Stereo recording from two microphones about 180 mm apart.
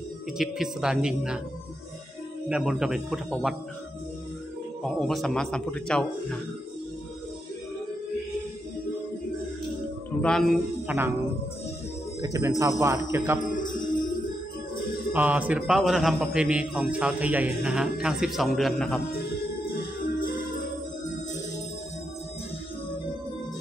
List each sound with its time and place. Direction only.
0.4 s a man's voice: 5° right (ahead or behind)
2.5 s a man's voice: 5° right (ahead or behind)
4.8 s a man's voice: centre (ahead or behind)
10.2 s a man's voice: centre (ahead or behind)
12.2 s speech: 15° right (ahead or behind)
13.4 s music: 45° left (ahead or behind)
15.1 s a man's voice: 10° right (ahead or behind)
19.7 s music: 55° left (ahead or behind)